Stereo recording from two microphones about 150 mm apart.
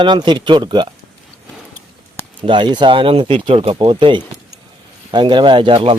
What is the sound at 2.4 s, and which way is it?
Speech, 30° right (ahead or behind).